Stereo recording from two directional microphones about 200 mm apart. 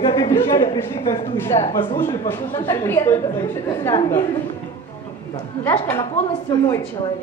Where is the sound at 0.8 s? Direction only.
10° left (ahead or behind).